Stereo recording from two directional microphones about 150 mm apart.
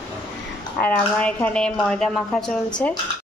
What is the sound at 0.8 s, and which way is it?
Speech, 10° left (ahead or behind).